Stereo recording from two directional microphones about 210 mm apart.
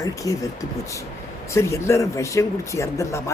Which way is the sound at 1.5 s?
15° left (ahead or behind).